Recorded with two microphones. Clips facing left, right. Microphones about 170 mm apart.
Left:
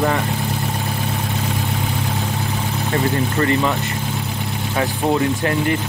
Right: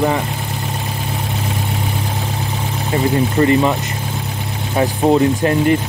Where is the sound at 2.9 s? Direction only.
20° right (ahead or behind).